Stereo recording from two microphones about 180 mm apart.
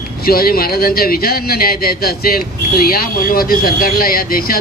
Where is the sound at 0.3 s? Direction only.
55° left (ahead or behind).